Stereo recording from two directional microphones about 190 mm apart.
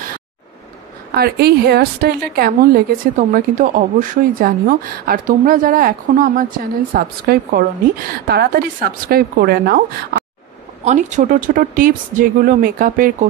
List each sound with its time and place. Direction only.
1.1 s a woman's voice: 55° right (ahead or behind)
10.8 s a woman's voice: 40° right (ahead or behind)